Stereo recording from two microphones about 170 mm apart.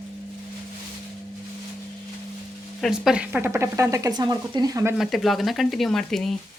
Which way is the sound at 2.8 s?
5° right (ahead or behind).